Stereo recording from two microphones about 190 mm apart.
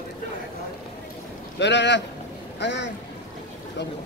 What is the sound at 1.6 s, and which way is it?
Speech, 65° left (ahead or behind).